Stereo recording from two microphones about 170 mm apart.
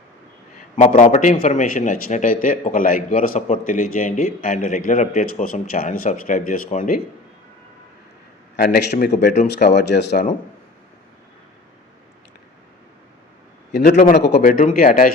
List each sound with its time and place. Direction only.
0.8 s a man's voice: 45° left (ahead or behind)
8.5 s a man's voice: 75° left (ahead or behind)
14.2 s speech: 85° left
14.6 s speech: 55° left (ahead or behind)